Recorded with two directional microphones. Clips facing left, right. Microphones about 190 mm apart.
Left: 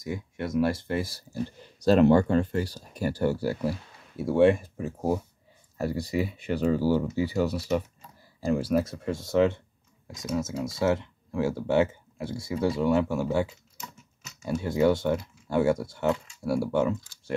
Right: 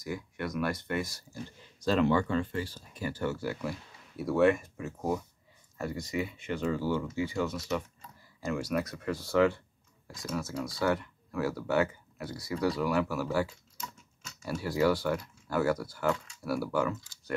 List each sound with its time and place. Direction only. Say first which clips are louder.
0.0 s speech: left 3 dB; 25° left (ahead or behind)
1.9 s speech: left 7 dB; 45° left (ahead or behind); by 17.3 s 25° left (ahead or behind)